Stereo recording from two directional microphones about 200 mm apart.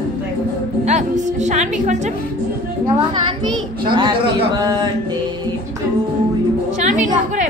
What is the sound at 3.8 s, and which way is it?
Speech, 25° right (ahead or behind).